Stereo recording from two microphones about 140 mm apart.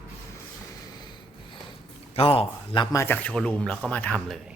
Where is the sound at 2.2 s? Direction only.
45° left (ahead or behind).